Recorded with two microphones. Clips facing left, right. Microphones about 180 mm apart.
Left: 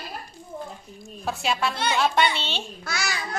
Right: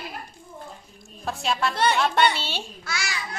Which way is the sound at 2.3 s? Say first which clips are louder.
Left 1 dB; 10° right (ahead or behind).